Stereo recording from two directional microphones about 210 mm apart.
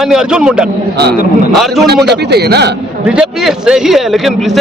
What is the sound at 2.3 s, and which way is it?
Speech, 50° right (ahead or behind).